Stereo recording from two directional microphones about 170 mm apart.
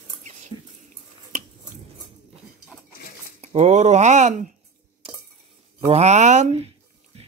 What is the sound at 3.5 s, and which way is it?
Speech, 45° right (ahead or behind).